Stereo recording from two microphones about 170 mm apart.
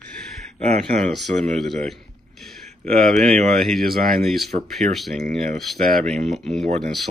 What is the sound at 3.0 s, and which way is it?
Speech, centre (ahead or behind).